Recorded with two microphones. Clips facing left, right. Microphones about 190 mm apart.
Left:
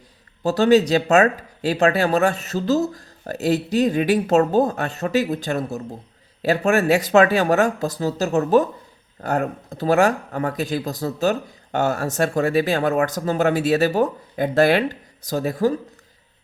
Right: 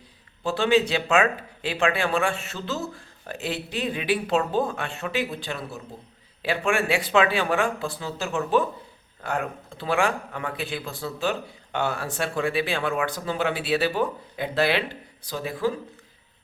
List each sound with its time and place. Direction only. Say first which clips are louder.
0.4 s speech: left 6 dB; 40° left (ahead or behind)